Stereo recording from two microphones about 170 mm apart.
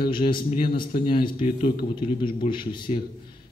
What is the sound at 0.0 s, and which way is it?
A man's voice, 30° left (ahead or behind).